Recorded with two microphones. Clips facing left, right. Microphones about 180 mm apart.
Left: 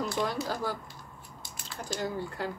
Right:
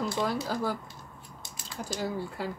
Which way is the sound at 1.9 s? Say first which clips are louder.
Even; 10° right (ahead or behind).